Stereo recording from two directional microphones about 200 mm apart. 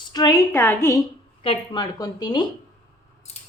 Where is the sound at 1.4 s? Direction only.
25° left (ahead or behind).